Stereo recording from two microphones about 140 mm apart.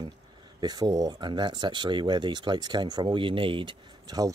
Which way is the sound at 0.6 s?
30° right (ahead or behind).